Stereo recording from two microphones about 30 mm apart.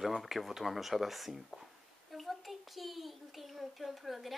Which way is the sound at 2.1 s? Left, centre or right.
Centre.